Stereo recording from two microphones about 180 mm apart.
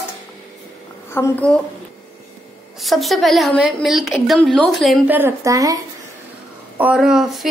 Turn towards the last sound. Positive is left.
turn(degrees=0)  # may be behind; listen again after turning